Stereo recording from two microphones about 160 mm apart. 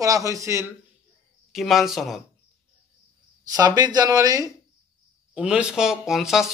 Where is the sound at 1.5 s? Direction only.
Centre (ahead or behind).